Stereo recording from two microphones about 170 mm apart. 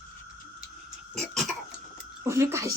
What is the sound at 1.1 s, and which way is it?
Cough, centre (ahead or behind).